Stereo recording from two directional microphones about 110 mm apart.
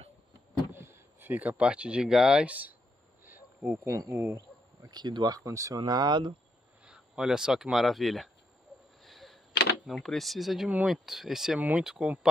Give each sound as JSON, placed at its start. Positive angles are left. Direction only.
{"t": 0.7, "sound": "speech", "side_deg": -20}
{"t": 3.3, "sound": "a sound", "side_deg": -15}
{"t": 3.8, "sound": "speech", "side_deg": -30}
{"t": 6.8, "sound": "speech", "side_deg": -5}
{"t": 9.0, "sound": "a sound", "side_deg": 0}
{"t": 9.8, "sound": "speech", "side_deg": 0}